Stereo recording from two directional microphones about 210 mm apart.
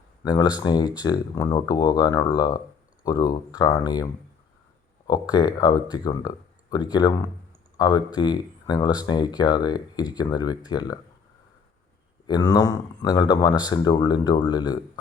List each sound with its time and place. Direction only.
0.3 s speech: 20° left (ahead or behind)
12.3 s speech: 20° left (ahead or behind)